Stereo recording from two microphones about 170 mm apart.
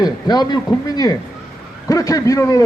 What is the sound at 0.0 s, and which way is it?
Speech, 25° left (ahead or behind).